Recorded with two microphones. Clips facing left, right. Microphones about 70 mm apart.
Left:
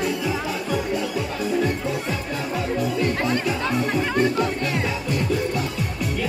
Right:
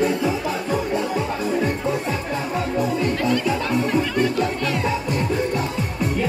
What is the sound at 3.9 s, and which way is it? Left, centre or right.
Music, left.